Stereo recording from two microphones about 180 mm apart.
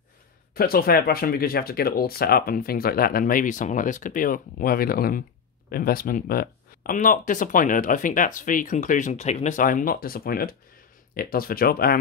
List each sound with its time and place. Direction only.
0.6 s speech: 55° left (ahead or behind)